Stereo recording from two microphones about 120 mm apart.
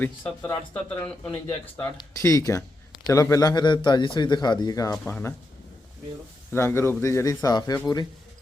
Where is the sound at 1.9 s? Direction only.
25° left (ahead or behind).